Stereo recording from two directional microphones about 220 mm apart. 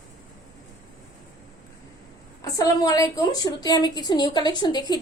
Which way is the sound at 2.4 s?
15° left (ahead or behind).